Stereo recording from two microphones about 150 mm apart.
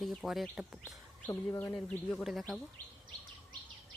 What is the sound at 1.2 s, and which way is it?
Speech, 15° left (ahead or behind).